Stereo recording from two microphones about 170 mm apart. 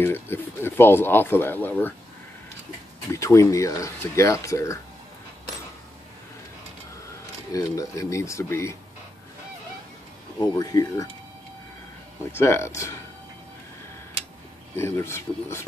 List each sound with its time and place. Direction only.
0.0 s speech: 15° left (ahead or behind)
3.1 s speech: 15° left (ahead or behind)
7.5 s speech: 20° left (ahead or behind)
10.4 s speech: 20° left (ahead or behind)
12.3 s speech: 15° left (ahead or behind)
14.8 s speech: 15° left (ahead or behind)